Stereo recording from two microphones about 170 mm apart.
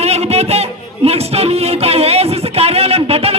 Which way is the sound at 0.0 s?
40° right (ahead or behind).